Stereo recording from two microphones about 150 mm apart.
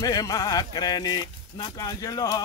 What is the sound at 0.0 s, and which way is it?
Speech, 25° left (ahead or behind).